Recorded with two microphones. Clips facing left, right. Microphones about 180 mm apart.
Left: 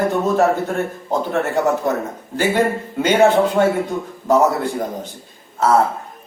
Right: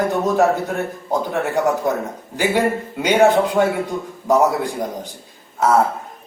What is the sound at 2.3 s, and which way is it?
A man's voice, 15° right (ahead or behind).